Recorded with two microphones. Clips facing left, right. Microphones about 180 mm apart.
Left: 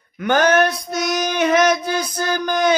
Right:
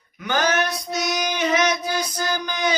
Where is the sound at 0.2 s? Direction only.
55° left (ahead or behind).